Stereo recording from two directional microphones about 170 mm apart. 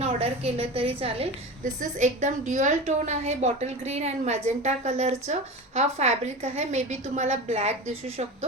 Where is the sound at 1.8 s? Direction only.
45° right (ahead or behind).